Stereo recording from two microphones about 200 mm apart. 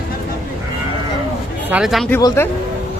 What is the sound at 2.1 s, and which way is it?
Speech, 10° left (ahead or behind).